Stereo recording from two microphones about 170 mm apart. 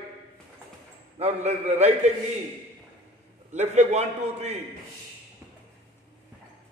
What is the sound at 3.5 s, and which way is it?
A man's voice, 40° right (ahead or behind).